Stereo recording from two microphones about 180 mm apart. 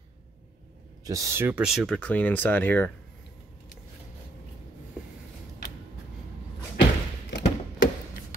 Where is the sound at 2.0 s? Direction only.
10° left (ahead or behind).